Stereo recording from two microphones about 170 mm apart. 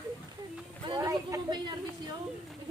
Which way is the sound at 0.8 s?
25° right (ahead or behind).